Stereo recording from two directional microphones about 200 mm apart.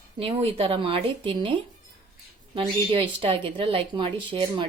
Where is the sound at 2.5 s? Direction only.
25° right (ahead or behind).